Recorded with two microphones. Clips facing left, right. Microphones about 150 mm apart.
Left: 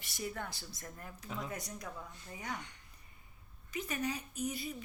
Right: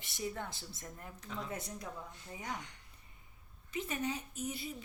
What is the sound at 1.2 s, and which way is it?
Speech, 10° left (ahead or behind).